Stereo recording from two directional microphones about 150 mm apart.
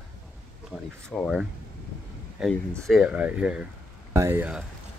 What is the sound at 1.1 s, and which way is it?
Speech, centre (ahead or behind).